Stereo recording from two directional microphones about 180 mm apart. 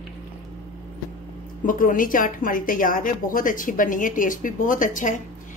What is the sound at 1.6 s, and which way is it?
A woman's voice, 50° left (ahead or behind).